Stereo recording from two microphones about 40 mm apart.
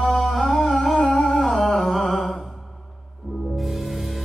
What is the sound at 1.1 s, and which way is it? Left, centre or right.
Music, centre.